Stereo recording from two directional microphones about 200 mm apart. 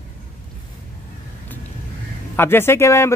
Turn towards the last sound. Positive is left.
turn(degrees=15)  # may be behind; listen again after turning